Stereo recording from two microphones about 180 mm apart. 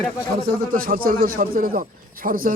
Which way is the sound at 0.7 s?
50° right (ahead or behind).